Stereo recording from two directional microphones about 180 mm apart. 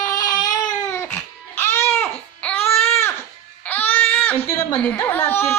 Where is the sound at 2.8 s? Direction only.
15° left (ahead or behind).